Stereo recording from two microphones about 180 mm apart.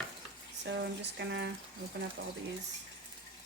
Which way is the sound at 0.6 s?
75° right (ahead or behind).